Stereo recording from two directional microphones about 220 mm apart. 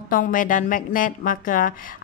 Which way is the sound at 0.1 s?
40° left (ahead or behind).